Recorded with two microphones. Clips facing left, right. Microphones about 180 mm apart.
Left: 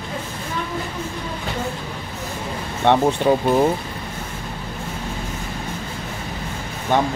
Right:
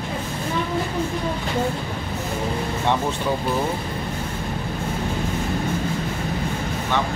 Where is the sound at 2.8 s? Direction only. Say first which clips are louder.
Left 8 dB; 65° left (ahead or behind).